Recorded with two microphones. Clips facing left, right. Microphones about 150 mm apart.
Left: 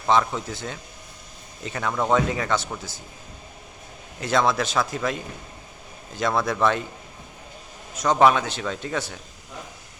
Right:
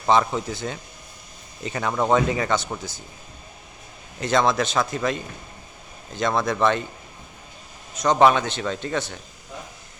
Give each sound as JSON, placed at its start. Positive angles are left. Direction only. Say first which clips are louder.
{"t": 0.1, "sound": "a man's voice", "louder": "right 2 dB", "side_deg": 0}
{"t": 4.2, "sound": "a man's voice", "louder": "right 1 dB", "side_deg": 5}
{"t": 7.9, "sound": "a man's voice", "louder": "right 1 dB", "side_deg": 5}